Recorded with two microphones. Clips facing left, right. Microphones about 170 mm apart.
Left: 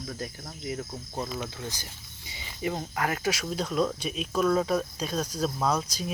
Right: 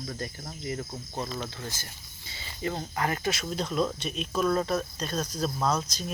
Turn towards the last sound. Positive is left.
turn(degrees=5)  # may be behind; listen again after turning